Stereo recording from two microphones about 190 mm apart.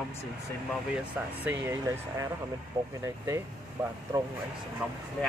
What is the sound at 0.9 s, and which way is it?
Speech, 10° right (ahead or behind).